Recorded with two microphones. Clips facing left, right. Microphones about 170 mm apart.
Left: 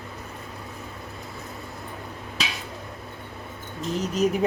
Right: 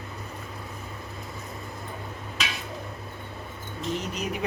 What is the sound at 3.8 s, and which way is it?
Speech, 40° left (ahead or behind).